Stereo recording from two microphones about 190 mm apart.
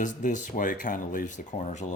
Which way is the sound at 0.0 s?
40° left (ahead or behind).